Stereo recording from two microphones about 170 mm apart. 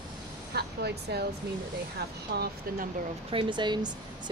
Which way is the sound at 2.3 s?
65° right (ahead or behind).